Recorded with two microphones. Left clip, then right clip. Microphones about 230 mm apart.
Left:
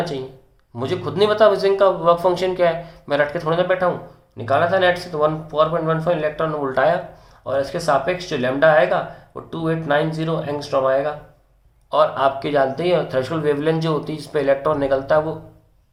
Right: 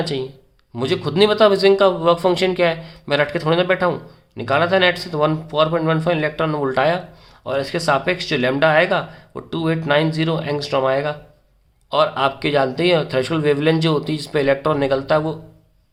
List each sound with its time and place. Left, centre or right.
0.8 s speech: right